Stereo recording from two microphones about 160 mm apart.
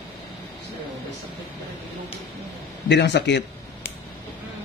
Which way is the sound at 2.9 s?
90° left.